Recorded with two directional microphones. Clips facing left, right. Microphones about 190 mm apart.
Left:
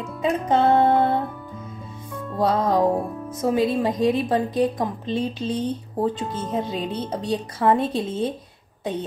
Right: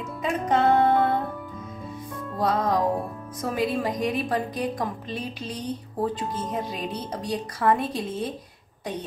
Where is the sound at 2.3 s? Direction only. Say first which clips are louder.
Left 4 dB; 25° left (ahead or behind).